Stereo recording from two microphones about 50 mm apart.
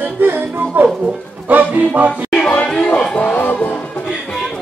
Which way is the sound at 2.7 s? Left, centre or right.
Centre.